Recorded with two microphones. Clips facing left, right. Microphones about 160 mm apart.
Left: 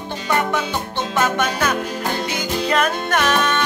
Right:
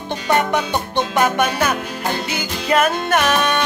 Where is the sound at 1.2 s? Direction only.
10° right (ahead or behind).